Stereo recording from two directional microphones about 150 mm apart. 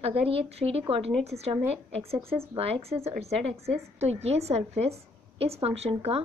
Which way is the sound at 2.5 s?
40° right (ahead or behind).